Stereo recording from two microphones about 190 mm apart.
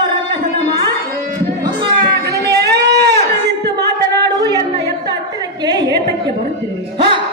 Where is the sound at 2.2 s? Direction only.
60° right (ahead or behind).